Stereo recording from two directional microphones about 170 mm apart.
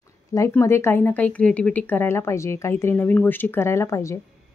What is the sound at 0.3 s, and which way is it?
A woman's voice, 15° left (ahead or behind).